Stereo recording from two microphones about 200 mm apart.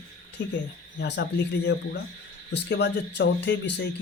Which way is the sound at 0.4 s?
60° left (ahead or behind).